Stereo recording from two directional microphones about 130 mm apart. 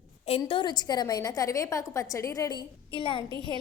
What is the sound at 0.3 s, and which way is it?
A woman's voice, 45° left (ahead or behind).